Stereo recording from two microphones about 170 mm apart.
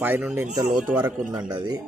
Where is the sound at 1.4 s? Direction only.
25° right (ahead or behind).